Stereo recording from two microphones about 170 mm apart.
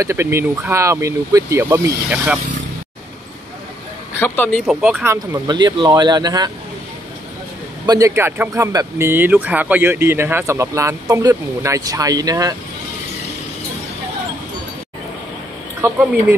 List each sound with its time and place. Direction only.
0.0 s speech: 15° right (ahead or behind)
4.1 s speech: 10° left (ahead or behind)
4.6 s speech: 5° right (ahead or behind); by 6.5 s 25° right (ahead or behind)
7.8 s speech: 20° right (ahead or behind)
15.8 s speech: 15° right (ahead or behind)